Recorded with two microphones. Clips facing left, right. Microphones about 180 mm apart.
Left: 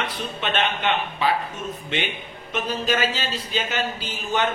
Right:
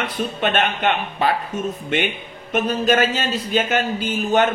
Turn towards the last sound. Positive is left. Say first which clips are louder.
# right 7 dB
turn(degrees=-50)  # may be behind; listen again after turning